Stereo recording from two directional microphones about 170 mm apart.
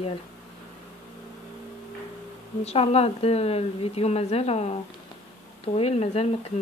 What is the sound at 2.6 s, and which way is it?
A woman's voice, 35° left (ahead or behind).